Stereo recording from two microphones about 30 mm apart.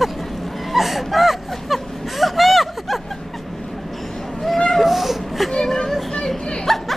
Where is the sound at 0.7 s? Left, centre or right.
Centre.